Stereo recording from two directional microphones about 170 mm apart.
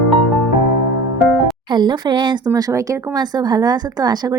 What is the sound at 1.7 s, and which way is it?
Speech, 25° right (ahead or behind).